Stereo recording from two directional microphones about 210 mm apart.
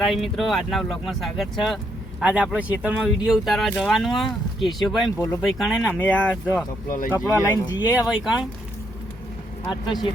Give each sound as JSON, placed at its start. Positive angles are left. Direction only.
{"t": 0.0, "sound": "speech", "side_deg": 0}
{"t": 8.0, "sound": "speech", "side_deg": 0}
{"t": 9.6, "sound": "speech", "side_deg": 20}